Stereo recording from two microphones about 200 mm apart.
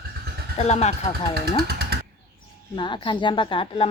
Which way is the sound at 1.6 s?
55° right (ahead or behind).